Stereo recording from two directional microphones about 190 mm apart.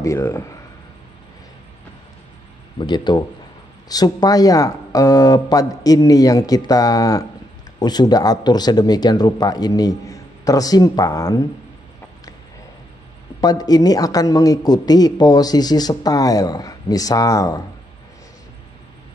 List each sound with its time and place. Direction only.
0.0 s speech: 15° left (ahead or behind)
2.8 s a man's voice: 25° left (ahead or behind)
13.4 s a man's voice: 20° left (ahead or behind)